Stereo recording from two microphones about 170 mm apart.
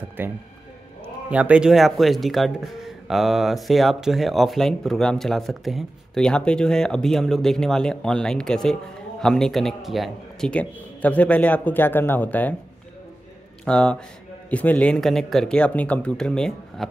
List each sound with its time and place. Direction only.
0.2 s a man's voice: 10° right (ahead or behind); by 12.5 s 10° left (ahead or behind)
13.7 s speech: 5° left (ahead or behind)